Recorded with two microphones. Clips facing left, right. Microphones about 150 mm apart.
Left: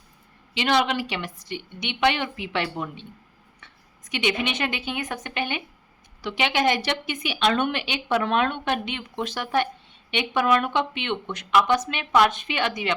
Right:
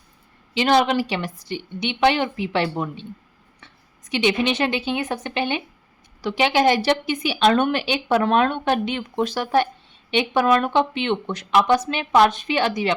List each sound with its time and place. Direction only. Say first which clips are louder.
0.5 s a woman's voice: right 5 dB; 35° right (ahead or behind)
4.1 s a woman's voice: right 5 dB; 30° right (ahead or behind)